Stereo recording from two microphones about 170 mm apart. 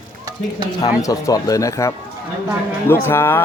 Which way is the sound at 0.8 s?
20° left (ahead or behind).